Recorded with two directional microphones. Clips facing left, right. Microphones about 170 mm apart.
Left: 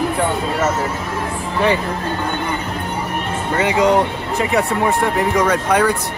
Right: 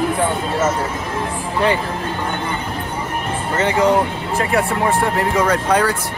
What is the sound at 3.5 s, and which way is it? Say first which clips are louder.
Speech: left 1 dB; 15° left (ahead or behind).